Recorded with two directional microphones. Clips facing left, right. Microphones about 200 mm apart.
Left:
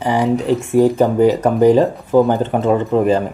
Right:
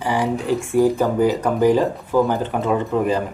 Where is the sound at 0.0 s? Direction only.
20° left (ahead or behind).